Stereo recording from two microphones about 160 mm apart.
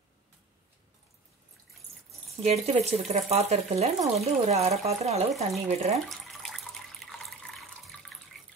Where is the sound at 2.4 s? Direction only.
40° right (ahead or behind).